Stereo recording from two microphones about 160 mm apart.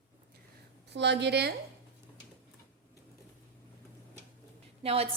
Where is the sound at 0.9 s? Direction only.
90° right.